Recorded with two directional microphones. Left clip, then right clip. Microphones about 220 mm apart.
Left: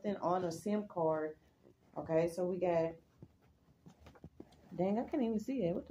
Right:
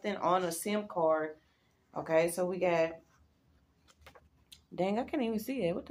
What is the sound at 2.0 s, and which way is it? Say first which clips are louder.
Speech: right 5 dB; 15° left (ahead or behind).